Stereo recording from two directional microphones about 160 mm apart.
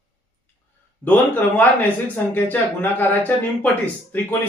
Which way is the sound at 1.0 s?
10° left (ahead or behind).